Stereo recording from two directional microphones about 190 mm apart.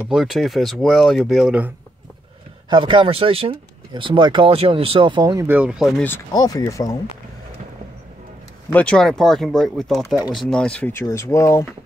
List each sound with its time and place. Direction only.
0.0 s speech: centre (ahead or behind)
2.7 s speech: 25° right (ahead or behind); by 6.0 s centre (ahead or behind)
6.0 s speech: 15° left (ahead or behind)
8.7 s speech: 5° left (ahead or behind)